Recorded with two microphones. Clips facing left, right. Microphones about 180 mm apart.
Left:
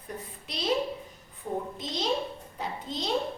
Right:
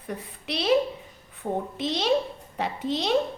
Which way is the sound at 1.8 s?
75° right (ahead or behind).